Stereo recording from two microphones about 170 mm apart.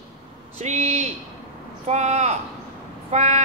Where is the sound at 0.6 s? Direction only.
40° right (ahead or behind).